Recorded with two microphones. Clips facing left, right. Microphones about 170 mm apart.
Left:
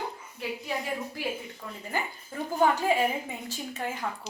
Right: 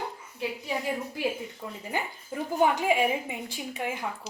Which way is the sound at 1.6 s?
20° right (ahead or behind).